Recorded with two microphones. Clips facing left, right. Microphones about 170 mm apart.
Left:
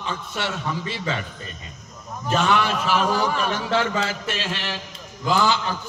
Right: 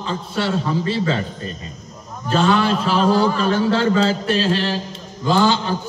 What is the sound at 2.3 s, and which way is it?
A man's voice, 30° right (ahead or behind).